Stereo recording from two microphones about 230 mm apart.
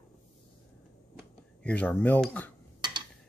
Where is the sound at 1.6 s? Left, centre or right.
Centre.